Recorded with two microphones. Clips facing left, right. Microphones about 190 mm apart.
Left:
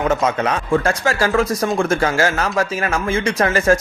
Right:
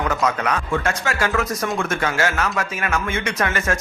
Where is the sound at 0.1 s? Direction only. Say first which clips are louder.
Left 3 dB; 25° left (ahead or behind).